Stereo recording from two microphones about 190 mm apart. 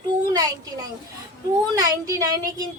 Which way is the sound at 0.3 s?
20° right (ahead or behind).